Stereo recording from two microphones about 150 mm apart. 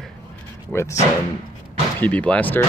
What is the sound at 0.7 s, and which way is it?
Speech, 15° left (ahead or behind).